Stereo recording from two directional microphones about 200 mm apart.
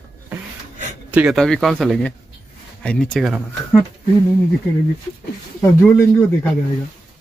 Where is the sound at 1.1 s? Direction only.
5° right (ahead or behind).